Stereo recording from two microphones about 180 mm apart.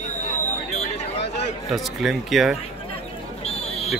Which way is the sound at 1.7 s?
Centre (ahead or behind).